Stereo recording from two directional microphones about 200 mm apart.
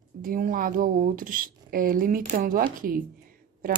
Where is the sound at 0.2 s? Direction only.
45° right (ahead or behind).